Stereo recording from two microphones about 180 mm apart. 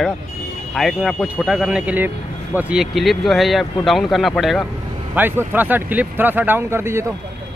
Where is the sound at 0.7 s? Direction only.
Centre (ahead or behind).